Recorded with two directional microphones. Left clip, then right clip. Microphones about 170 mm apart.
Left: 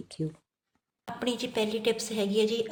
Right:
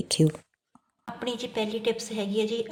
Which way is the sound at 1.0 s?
Centre (ahead or behind).